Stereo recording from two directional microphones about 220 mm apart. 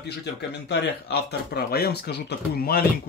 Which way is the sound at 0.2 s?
50° left (ahead or behind).